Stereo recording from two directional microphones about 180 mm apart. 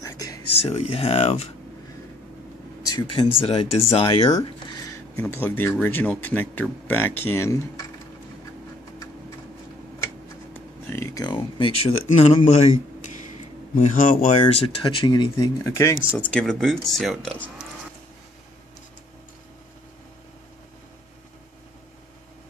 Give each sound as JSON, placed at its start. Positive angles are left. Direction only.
{"t": 0.0, "sound": "a sound", "side_deg": 20}
{"t": 0.6, "sound": "speech", "side_deg": 35}
{"t": 2.9, "sound": "speech", "side_deg": 25}
{"t": 10.5, "sound": "a sound", "side_deg": 15}
{"t": 12.1, "sound": "speech", "side_deg": 40}
{"t": 13.7, "sound": "speech", "side_deg": 45}
{"t": 14.8, "sound": "speech", "side_deg": 25}
{"t": 16.2, "sound": "speech", "side_deg": 5}